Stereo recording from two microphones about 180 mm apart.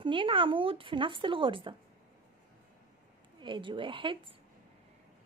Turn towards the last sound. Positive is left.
turn(degrees=-30)  # may be behind; listen again after turning